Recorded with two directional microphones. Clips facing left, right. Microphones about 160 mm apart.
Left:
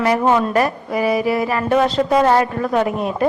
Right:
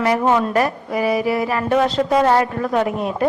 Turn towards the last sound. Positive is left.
turn(degrees=30)  # may be behind; listen again after turning